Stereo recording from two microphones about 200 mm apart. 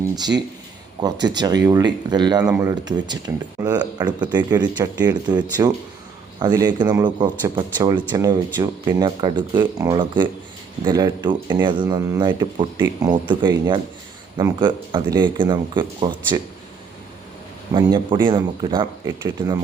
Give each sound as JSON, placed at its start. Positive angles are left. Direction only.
{"t": 0.9, "sound": "speech", "side_deg": -20}
{"t": 17.7, "sound": "speech", "side_deg": -20}